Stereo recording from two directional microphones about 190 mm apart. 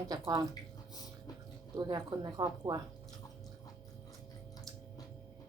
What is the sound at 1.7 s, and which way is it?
Speech, 20° right (ahead or behind).